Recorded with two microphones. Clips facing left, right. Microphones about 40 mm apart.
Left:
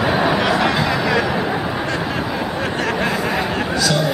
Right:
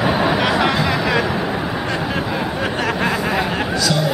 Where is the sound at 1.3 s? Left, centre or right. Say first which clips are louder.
Left 1 dB; centre.